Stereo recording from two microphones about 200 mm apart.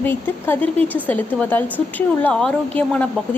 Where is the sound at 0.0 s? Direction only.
10° left (ahead or behind).